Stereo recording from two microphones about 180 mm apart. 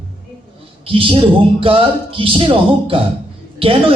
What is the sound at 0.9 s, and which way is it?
A man's voice, 30° right (ahead or behind).